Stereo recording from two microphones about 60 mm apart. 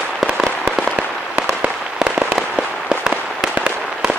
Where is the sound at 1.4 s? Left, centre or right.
Centre.